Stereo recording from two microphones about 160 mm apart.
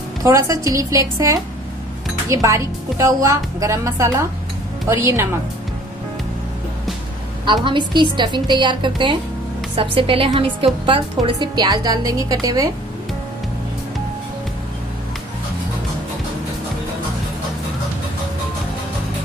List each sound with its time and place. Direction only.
0.2 s a woman's voice: 20° right (ahead or behind)
7.4 s a woman's voice: 30° right (ahead or behind)